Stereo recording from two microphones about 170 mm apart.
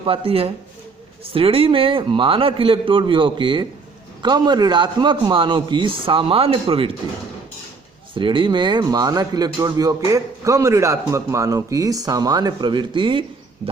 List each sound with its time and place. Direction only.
0.0 s a man's voice: 30° right (ahead or behind)
8.1 s a man's voice: 30° right (ahead or behind)